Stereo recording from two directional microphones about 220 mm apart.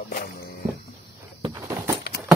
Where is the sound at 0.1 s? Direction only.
45° left (ahead or behind).